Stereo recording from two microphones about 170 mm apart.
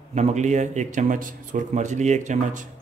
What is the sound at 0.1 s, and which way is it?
Speech, 45° right (ahead or behind).